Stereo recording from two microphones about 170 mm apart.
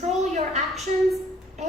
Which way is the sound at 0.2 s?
40° right (ahead or behind).